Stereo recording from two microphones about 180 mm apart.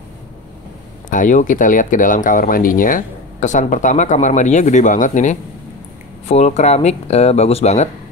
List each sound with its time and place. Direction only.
1.1 s speech: 45° left (ahead or behind)